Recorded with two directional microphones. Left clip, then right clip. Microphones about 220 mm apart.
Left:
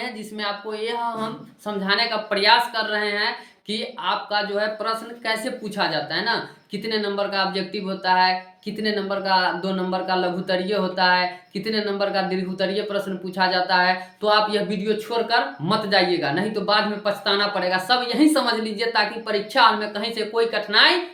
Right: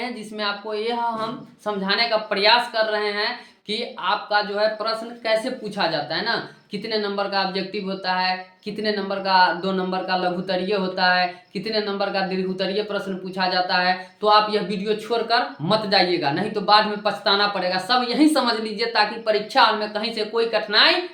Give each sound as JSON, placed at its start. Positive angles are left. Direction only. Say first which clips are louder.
{"t": 0.0, "sound": "speech", "louder": "right 1 dB", "side_deg": -15}